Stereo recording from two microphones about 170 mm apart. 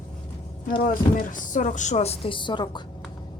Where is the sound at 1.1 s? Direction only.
50° left (ahead or behind); by 2.8 s 30° left (ahead or behind).